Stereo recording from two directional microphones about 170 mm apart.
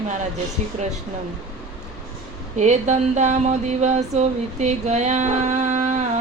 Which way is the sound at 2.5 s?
45° right (ahead or behind).